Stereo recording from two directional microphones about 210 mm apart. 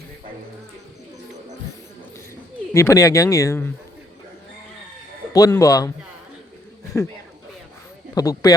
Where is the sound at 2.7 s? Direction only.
15° left (ahead or behind).